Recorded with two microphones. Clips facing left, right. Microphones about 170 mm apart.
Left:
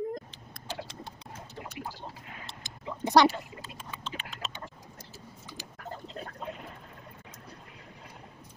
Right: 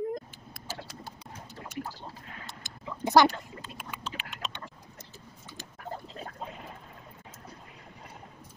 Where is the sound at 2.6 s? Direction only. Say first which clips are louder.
Even; centre (ahead or behind).